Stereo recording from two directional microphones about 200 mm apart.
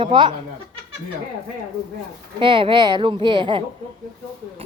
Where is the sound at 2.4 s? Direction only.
25° right (ahead or behind).